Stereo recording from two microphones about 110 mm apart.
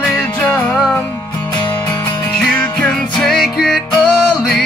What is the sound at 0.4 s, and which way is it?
Music, 10° left (ahead or behind).